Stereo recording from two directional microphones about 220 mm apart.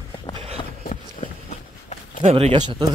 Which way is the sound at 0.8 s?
35° left (ahead or behind).